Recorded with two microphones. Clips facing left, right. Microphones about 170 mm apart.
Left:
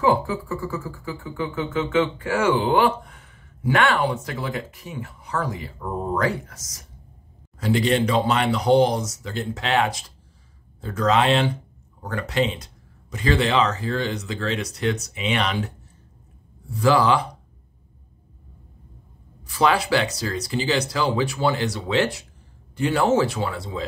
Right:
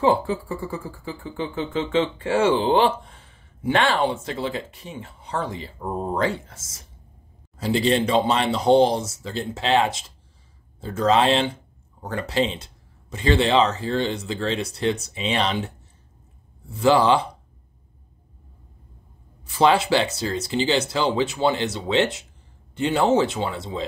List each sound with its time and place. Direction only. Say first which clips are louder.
0.0 s speech: right 1 dB; 30° right (ahead or behind)
16.8 s speech: right 1 dB; 25° right (ahead or behind)
19.4 s speech: right 2 dB; 25° right (ahead or behind)